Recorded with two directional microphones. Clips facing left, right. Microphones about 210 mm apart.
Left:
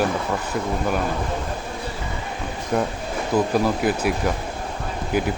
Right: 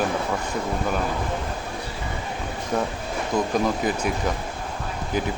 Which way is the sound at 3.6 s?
5° left (ahead or behind).